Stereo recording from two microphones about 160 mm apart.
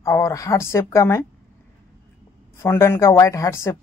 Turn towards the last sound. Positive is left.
turn(degrees=20)  # may be behind; listen again after turning